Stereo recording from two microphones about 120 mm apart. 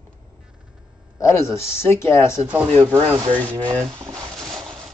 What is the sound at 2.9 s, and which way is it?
Speech, 25° right (ahead or behind).